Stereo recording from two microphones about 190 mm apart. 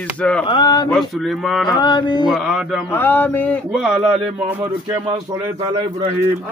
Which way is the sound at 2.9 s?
10° left (ahead or behind).